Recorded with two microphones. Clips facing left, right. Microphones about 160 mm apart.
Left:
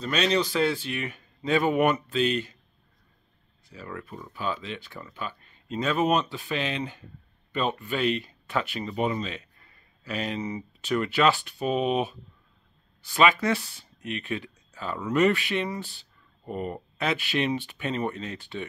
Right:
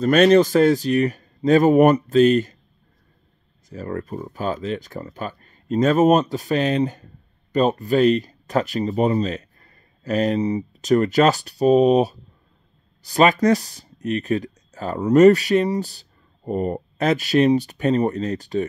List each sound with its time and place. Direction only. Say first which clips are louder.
0.0 s speech: right 11 dB; 50° right (ahead or behind)
3.6 s speech: right 10 dB; 45° right (ahead or behind)